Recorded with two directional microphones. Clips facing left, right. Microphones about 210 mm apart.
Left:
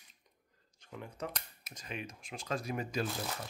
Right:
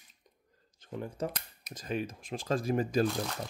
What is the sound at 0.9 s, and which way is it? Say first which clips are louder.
Speech: right 6 dB; 40° right (ahead or behind).